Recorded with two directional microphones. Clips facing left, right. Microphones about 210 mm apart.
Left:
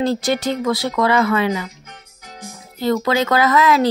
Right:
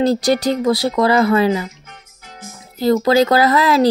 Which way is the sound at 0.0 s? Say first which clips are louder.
Right 4 dB; 40° right (ahead or behind).